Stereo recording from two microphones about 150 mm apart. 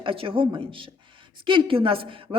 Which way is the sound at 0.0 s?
35° right (ahead or behind).